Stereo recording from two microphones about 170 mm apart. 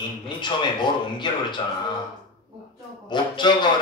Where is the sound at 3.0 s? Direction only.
25° left (ahead or behind).